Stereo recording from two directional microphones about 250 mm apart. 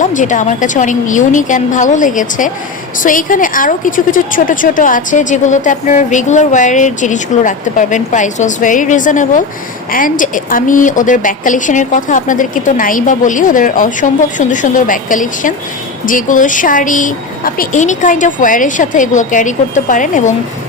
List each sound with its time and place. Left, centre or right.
0.0 s a woman's voice: left